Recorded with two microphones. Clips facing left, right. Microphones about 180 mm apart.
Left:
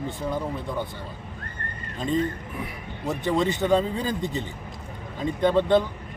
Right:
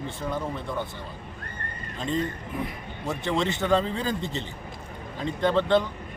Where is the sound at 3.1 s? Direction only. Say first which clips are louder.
Left 3 dB; 15° left (ahead or behind).